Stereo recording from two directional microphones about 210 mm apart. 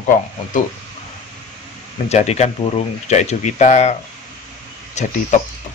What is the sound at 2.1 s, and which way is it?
Speech, 30° left (ahead or behind).